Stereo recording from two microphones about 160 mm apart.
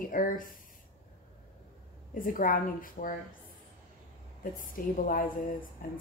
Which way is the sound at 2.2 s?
60° left (ahead or behind).